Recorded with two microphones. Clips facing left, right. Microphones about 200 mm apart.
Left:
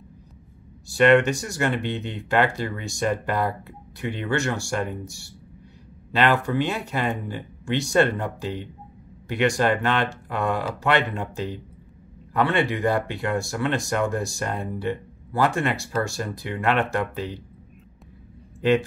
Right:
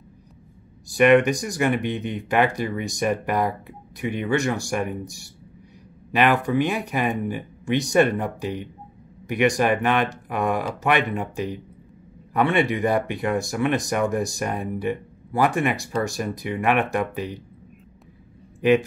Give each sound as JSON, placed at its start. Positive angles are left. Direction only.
{"t": 0.8, "sound": "speech", "side_deg": -15}
{"t": 18.6, "sound": "speech", "side_deg": -15}